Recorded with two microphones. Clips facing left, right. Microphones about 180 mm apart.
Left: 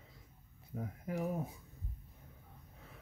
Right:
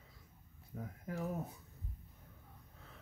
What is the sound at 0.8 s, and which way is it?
Speech, 15° left (ahead or behind).